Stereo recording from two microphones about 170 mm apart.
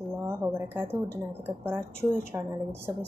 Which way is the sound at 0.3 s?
15° right (ahead or behind).